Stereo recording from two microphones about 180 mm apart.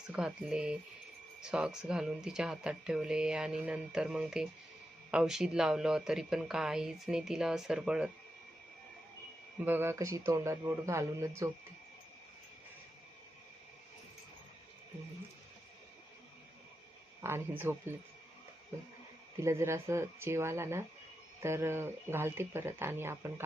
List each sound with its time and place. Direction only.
0.1 s speech: 5° right (ahead or behind)
9.6 s speech: 10° right (ahead or behind)
17.2 s speech: 10° right (ahead or behind)
19.4 s speech: 15° right (ahead or behind)